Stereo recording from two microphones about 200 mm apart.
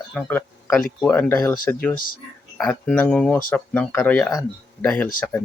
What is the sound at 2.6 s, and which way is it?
Speech, 5° left (ahead or behind).